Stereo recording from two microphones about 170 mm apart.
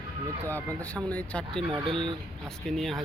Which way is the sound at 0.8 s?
10° left (ahead or behind).